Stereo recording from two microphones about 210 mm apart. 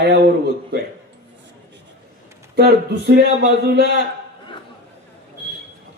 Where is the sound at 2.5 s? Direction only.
50° right (ahead or behind).